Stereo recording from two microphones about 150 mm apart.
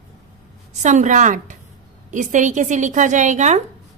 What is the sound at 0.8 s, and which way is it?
A woman's voice, 55° right (ahead or behind).